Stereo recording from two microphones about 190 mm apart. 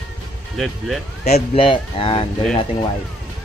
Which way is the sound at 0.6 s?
Centre (ahead or behind).